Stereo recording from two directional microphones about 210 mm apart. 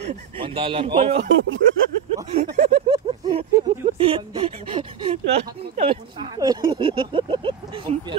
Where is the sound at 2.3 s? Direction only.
30° right (ahead or behind).